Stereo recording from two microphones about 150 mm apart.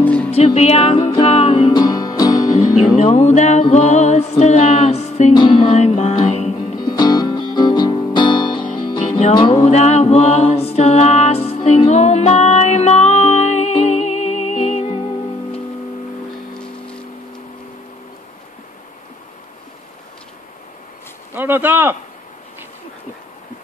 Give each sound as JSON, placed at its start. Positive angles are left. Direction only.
{"t": 0.0, "sound": "music", "side_deg": 10}
{"t": 0.6, "sound": "music", "side_deg": 45}
{"t": 1.7, "sound": "music", "side_deg": 25}
{"t": 3.0, "sound": "music", "side_deg": 50}
{"t": 5.3, "sound": "music", "side_deg": 30}
{"t": 5.7, "sound": "music", "side_deg": 45}
{"t": 6.8, "sound": "music", "side_deg": 25}
{"t": 9.6, "sound": "mantra", "side_deg": 50}
{"t": 16.5, "sound": "music", "side_deg": 5}
{"t": 21.3, "sound": "speech", "side_deg": -15}